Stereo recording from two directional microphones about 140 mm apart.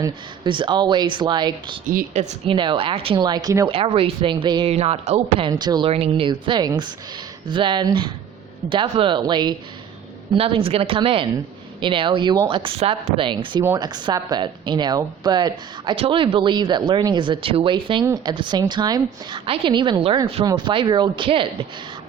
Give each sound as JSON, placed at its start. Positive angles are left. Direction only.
{"t": 0.4, "sound": "speech", "side_deg": -35}
{"t": 2.1, "sound": "speech", "side_deg": -55}
{"t": 2.5, "sound": "speech", "side_deg": -35}
{"t": 3.7, "sound": "speech", "side_deg": -40}
{"t": 4.7, "sound": "speech", "side_deg": -50}
{"t": 5.5, "sound": "speech", "side_deg": -30}
{"t": 5.9, "sound": "speech", "side_deg": -45}
{"t": 10.3, "sound": "speech", "side_deg": -40}